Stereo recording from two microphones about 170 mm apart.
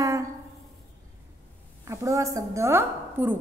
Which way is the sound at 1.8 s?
20° right (ahead or behind).